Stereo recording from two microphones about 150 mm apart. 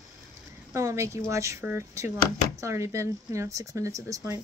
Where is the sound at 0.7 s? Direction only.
20° right (ahead or behind).